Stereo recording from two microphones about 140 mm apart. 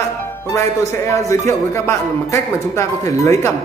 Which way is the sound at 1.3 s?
20° left (ahead or behind).